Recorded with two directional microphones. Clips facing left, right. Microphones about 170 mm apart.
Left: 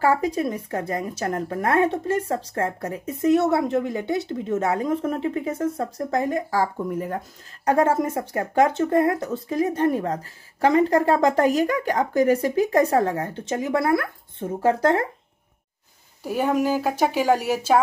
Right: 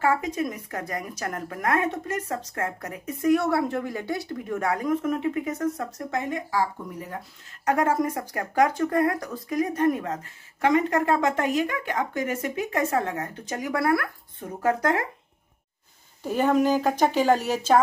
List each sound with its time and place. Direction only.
0.0 s speech: 35° left (ahead or behind)
7.6 s speech: 30° left (ahead or behind)
16.2 s speech: 10° left (ahead or behind)